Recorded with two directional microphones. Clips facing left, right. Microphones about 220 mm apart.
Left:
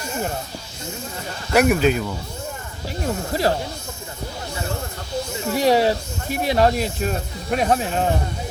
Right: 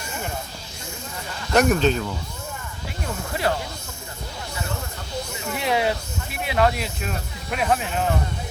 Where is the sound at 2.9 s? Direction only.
35° left (ahead or behind).